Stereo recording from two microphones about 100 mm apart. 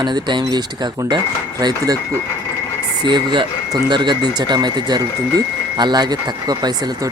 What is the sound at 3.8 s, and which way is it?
Speech, 50° right (ahead or behind).